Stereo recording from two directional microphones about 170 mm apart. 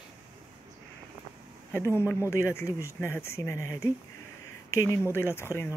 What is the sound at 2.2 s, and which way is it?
Speech, 15° left (ahead or behind).